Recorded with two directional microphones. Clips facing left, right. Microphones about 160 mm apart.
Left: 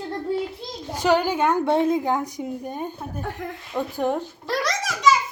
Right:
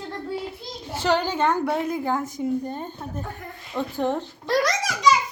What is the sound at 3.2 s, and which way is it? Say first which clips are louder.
Speech: left 5 dB; 90° left.